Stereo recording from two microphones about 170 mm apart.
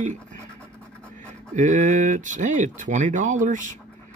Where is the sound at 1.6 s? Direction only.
45° right (ahead or behind).